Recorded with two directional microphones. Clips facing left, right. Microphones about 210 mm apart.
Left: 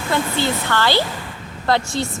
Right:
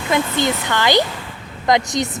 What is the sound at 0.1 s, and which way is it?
A woman's voice, 15° right (ahead or behind).